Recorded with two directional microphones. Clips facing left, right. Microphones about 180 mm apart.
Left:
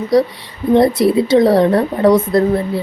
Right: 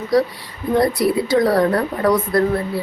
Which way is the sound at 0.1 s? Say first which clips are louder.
Left 3 dB; 20° left (ahead or behind).